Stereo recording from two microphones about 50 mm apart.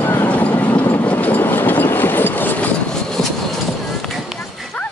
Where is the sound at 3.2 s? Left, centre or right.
Centre.